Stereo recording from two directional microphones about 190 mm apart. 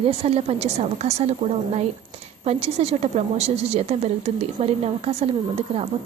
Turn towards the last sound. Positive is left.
turn(degrees=-35)  # may be behind; listen again after turning